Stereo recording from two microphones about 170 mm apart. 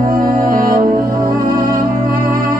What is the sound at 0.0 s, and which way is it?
Music, 55° right (ahead or behind).